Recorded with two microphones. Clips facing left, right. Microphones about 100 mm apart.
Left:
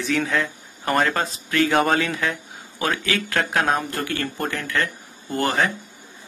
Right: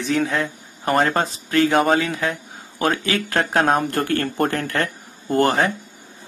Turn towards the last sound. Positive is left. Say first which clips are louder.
# right 4 dB
turn(degrees=-35)  # may be behind; listen again after turning